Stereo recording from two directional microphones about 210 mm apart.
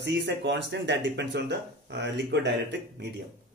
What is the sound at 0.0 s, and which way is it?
Speech, 55° right (ahead or behind).